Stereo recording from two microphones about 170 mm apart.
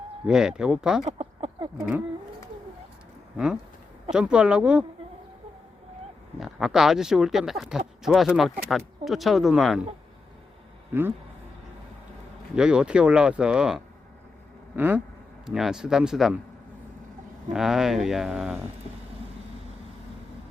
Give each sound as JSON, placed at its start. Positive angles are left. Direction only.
{"t": 0.3, "sound": "speech", "side_deg": -5}
{"t": 1.0, "sound": "a sound", "side_deg": -35}
{"t": 3.3, "sound": "speech", "side_deg": -5}
{"t": 6.4, "sound": "speech", "side_deg": 0}
{"t": 10.9, "sound": "a sound", "side_deg": -15}
{"t": 12.5, "sound": "speech", "side_deg": -5}
{"t": 14.8, "sound": "a sound", "side_deg": -10}
{"t": 15.4, "sound": "speech", "side_deg": -5}
{"t": 17.5, "sound": "speech", "side_deg": -5}